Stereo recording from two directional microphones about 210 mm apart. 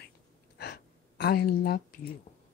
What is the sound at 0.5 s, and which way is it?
Gasp, 50° left (ahead or behind).